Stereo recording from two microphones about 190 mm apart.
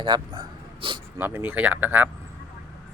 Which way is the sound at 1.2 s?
10° right (ahead or behind).